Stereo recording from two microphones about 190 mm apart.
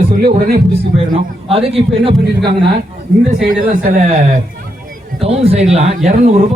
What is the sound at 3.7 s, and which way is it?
Speech, 45° right (ahead or behind).